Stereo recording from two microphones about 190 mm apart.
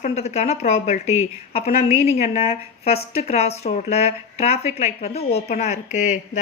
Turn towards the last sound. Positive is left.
turn(degrees=40)  # may be behind; listen again after turning